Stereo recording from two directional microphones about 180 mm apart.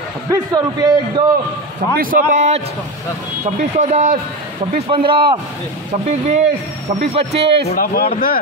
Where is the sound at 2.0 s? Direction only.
45° right (ahead or behind).